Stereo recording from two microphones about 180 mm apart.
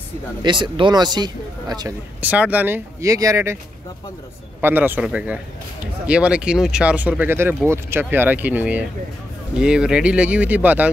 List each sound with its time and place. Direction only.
0.4 s speech: 25° right (ahead or behind)
2.2 s speech: 10° right (ahead or behind)
4.6 s speech: 10° right (ahead or behind)